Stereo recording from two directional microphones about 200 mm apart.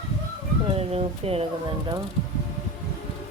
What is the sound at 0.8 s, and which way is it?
Speech, 30° right (ahead or behind).